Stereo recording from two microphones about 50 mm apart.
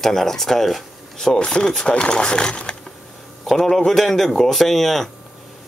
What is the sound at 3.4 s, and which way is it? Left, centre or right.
Speech, centre.